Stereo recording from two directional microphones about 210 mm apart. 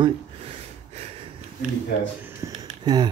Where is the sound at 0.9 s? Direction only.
30° right (ahead or behind).